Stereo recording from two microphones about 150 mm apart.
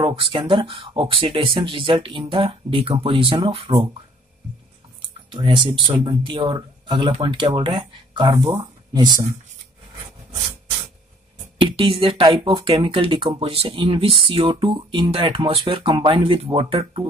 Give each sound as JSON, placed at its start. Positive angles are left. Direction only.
{"t": 0.0, "sound": "speech", "side_deg": -35}
{"t": 5.3, "sound": "speech", "side_deg": -35}
{"t": 11.6, "sound": "speech", "side_deg": -35}